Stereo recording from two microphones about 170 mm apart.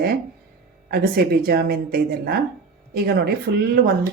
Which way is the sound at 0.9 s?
65° right (ahead or behind).